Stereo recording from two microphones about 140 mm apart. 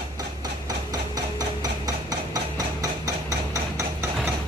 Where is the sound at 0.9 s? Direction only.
25° right (ahead or behind).